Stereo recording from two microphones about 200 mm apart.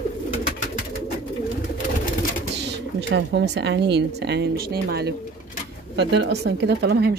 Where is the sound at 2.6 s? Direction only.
60° right (ahead or behind).